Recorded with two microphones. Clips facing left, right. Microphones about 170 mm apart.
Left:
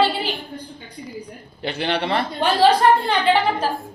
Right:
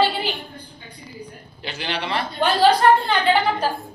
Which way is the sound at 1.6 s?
55° left (ahead or behind).